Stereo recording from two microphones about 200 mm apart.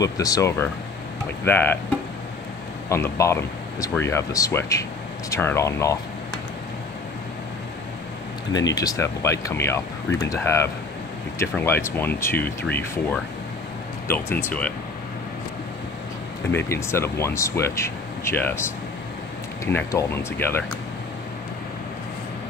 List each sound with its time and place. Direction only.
0.0 s speech: 15° left (ahead or behind)
2.9 s speech: 15° left (ahead or behind)
8.5 s speech: 20° left (ahead or behind)
16.5 s speech: 15° left (ahead or behind)
19.6 s speech: 15° left (ahead or behind)